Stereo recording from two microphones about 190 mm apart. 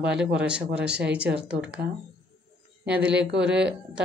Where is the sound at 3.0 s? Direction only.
65° right (ahead or behind).